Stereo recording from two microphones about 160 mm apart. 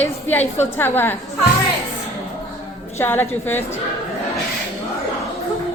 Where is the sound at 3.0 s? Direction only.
15° left (ahead or behind).